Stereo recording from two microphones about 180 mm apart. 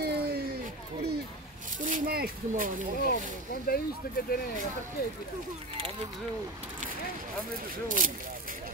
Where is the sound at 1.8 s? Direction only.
45° right (ahead or behind).